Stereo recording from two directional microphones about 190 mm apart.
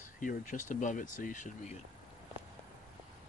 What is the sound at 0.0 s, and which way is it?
Speech, 45° left (ahead or behind).